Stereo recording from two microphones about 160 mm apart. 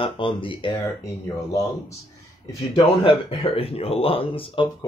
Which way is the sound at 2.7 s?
35° left (ahead or behind).